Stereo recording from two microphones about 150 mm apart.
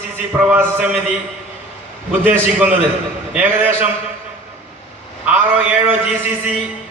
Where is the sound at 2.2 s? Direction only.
10° right (ahead or behind).